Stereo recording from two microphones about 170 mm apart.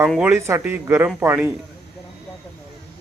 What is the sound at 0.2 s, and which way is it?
A man's voice, 15° right (ahead or behind).